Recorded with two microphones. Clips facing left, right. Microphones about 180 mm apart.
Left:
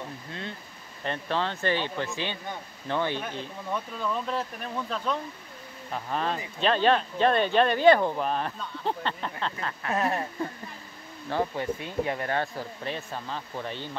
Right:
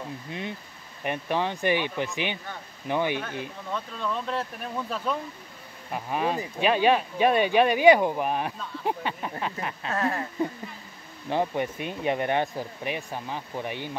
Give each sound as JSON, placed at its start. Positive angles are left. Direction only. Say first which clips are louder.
{"t": 0.3, "sound": "speech", "louder": "right 3 dB", "side_deg": -15}
{"t": 3.7, "sound": "speech", "louder": "even", "side_deg": 5}
{"t": 9.8, "sound": "speech", "louder": "left 1 dB", "side_deg": 20}
{"t": 11.2, "sound": "speech", "louder": "right 2 dB", "side_deg": -20}